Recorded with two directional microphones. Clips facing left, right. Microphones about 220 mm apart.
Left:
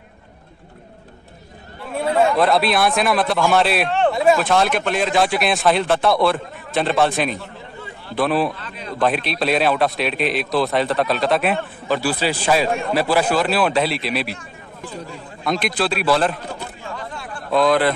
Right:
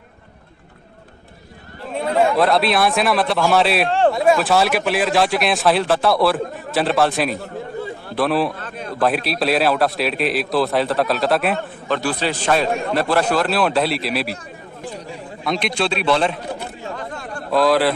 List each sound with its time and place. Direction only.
2.3 s a man's voice: centre (ahead or behind)
8.5 s speech: 50° right (ahead or behind)
9.0 s a man's voice: centre (ahead or behind)
15.4 s a man's voice: centre (ahead or behind)
16.8 s a sound: 45° right (ahead or behind)
17.5 s a man's voice: centre (ahead or behind)